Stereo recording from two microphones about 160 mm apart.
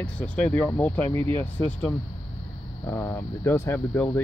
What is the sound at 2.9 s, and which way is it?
Speech, 15° left (ahead or behind).